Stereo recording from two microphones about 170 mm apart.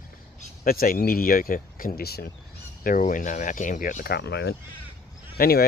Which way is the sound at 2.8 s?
50° left (ahead or behind).